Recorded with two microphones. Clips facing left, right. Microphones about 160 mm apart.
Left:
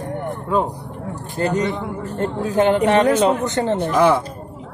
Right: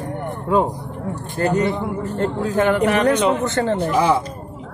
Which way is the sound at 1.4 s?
20° left (ahead or behind).